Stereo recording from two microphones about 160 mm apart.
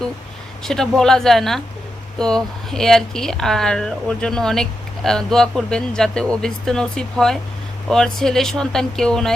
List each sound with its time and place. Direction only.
0.6 s speech: 5° left (ahead or behind)